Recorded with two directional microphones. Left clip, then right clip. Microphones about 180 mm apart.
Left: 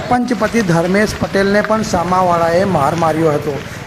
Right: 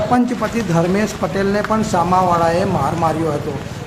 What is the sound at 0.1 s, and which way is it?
Speech, 30° left (ahead or behind).